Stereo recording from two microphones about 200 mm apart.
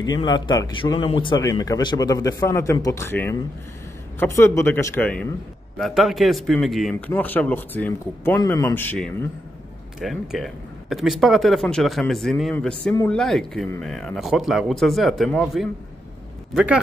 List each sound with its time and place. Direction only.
0.0 s a man's voice: 20° left (ahead or behind); by 16.8 s 5° right (ahead or behind)